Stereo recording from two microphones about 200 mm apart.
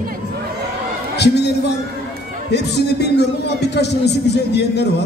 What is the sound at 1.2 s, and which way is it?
A man's voice, 55° left (ahead or behind).